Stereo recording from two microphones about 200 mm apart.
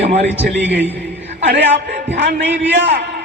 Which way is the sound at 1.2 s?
60° right (ahead or behind).